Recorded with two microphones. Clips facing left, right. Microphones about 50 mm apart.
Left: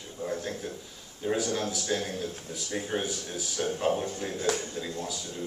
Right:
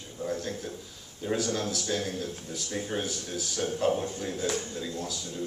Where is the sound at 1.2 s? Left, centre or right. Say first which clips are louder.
Left 1 dB; centre.